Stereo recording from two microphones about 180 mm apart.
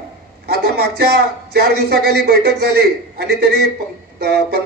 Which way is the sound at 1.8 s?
65° right (ahead or behind).